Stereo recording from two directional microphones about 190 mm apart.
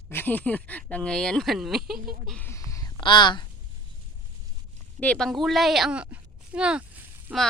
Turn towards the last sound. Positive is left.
turn(degrees=-5)  # may be behind; listen again after turning